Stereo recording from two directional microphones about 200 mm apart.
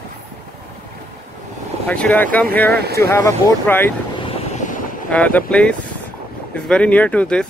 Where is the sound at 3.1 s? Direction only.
15° left (ahead or behind).